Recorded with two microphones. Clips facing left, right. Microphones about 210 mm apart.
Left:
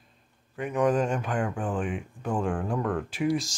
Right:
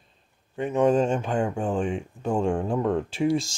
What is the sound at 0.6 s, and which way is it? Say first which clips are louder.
Speech: right 4 dB; 25° right (ahead or behind).